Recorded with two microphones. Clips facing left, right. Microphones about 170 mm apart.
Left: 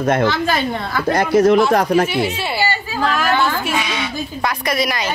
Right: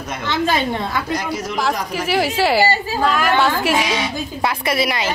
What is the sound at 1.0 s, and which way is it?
Speech, 60° left (ahead or behind).